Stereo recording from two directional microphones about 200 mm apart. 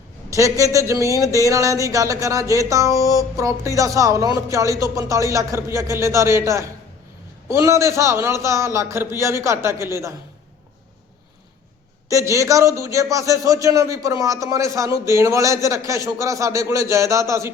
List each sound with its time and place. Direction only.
0.3 s a man's voice: 15° right (ahead or behind)
12.0 s a man's voice: 15° right (ahead or behind)